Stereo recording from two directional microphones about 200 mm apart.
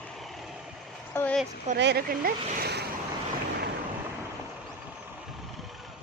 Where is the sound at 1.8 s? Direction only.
55° right (ahead or behind).